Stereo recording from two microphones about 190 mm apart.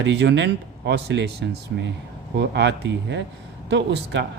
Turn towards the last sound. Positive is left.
turn(degrees=-65)  # may be behind; listen again after turning